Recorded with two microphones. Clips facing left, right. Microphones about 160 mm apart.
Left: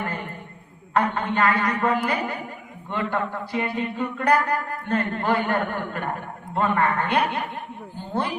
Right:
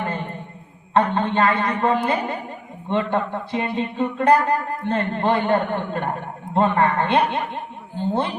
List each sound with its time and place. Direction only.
0.9 s speech: 25° right (ahead or behind)